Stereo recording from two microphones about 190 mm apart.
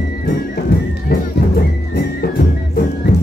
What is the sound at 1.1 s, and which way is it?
Music, 55° left (ahead or behind).